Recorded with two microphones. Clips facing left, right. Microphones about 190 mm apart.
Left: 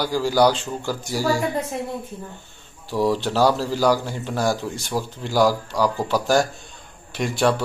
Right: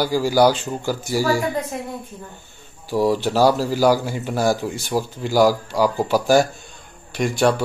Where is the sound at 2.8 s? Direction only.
5° right (ahead or behind).